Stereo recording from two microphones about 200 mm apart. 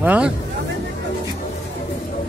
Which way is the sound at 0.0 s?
10° right (ahead or behind).